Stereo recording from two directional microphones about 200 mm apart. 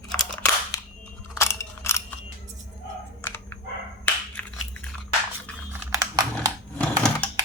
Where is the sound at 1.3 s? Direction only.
15° left (ahead or behind).